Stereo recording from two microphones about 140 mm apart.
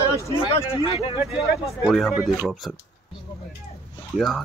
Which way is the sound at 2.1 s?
10° right (ahead or behind).